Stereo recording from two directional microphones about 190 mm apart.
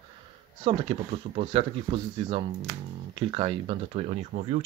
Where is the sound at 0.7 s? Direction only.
30° right (ahead or behind).